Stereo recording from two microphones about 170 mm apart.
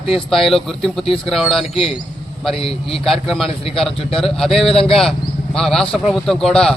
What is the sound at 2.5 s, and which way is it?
Speech, 35° left (ahead or behind).